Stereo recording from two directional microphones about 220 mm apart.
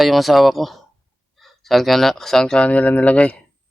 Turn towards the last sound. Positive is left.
turn(degrees=5)  # may be behind; listen again after turning